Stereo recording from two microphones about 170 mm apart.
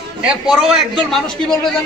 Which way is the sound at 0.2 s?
5° right (ahead or behind).